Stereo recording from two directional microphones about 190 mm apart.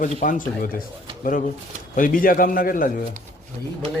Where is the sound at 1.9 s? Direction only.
45° left (ahead or behind).